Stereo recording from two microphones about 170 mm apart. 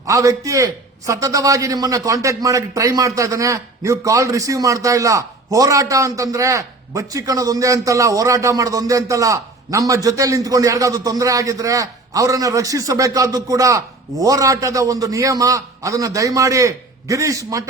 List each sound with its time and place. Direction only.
0.0 s a man's voice: 20° right (ahead or behind)